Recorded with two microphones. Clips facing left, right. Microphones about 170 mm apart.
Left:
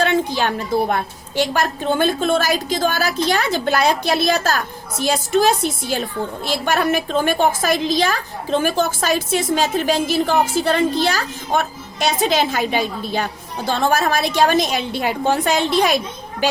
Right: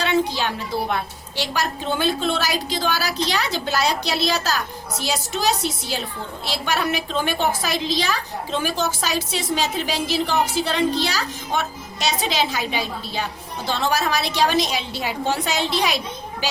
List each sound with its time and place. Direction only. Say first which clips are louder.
0.0 s a woman's voice: left 3 dB; 50° left (ahead or behind)